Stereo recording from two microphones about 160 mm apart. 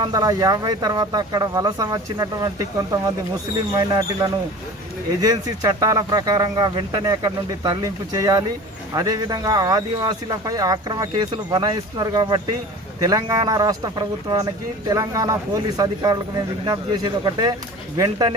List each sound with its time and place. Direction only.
0.0 s speech: 25° right (ahead or behind)